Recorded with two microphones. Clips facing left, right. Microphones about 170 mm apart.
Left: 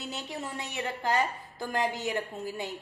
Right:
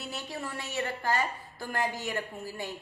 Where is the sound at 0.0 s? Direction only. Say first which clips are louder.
Left 1 dB; 20° left (ahead or behind).